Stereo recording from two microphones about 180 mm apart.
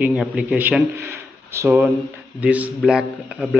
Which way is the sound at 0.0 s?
5° right (ahead or behind).